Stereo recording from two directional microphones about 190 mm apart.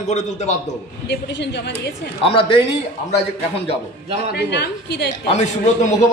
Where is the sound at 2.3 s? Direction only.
25° left (ahead or behind).